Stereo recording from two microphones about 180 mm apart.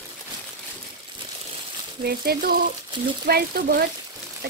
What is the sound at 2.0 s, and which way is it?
Speech, 55° right (ahead or behind).